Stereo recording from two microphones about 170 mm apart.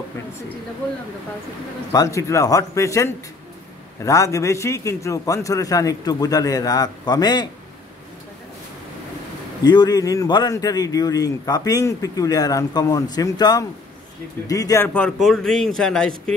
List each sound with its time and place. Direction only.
1.9 s speech: 20° left (ahead or behind)
9.6 s speech: 25° left (ahead or behind)
15.0 s speech: 5° left (ahead or behind)